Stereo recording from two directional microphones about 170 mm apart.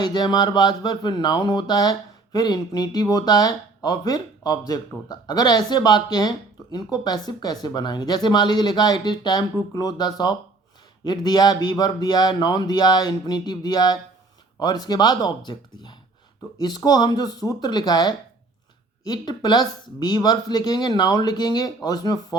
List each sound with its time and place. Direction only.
0.0 s speech: 25° left (ahead or behind)